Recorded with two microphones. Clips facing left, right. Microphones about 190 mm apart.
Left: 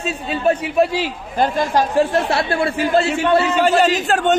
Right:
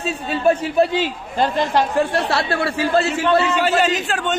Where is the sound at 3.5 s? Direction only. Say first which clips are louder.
Left 3 dB; 45° left (ahead or behind).